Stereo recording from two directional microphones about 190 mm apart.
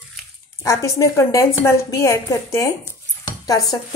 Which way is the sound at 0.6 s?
15° left (ahead or behind).